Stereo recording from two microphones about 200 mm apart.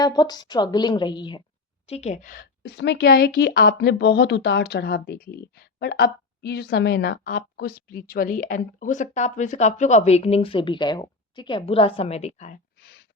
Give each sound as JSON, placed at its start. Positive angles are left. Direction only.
{"t": 0.0, "sound": "a woman's voice", "side_deg": 20}
{"t": 1.9, "sound": "a woman's voice", "side_deg": 35}
{"t": 12.8, "sound": "a sound", "side_deg": 55}